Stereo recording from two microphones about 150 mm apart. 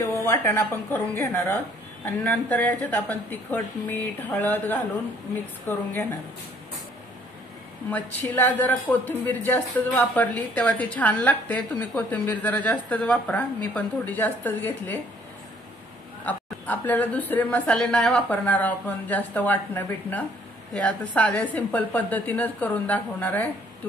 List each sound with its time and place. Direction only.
0.1 s a woman's voice: 15° left (ahead or behind)
7.9 s a woman's voice: 10° left (ahead or behind)
16.3 s a woman's voice: 10° left (ahead or behind)